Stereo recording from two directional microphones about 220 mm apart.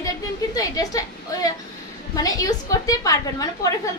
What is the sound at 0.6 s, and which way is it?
A woman's voice, 15° left (ahead or behind).